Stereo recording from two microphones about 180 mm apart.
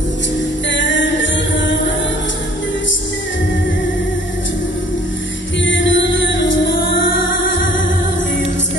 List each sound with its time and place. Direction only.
0.7 s music: 90° left
5.7 s music: 90° left